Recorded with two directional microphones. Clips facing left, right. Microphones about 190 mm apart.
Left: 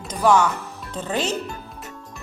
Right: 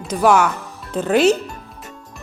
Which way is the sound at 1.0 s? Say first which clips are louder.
Right 9 dB; 90° right.